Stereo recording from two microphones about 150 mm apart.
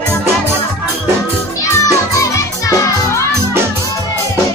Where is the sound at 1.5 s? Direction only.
20° left (ahead or behind).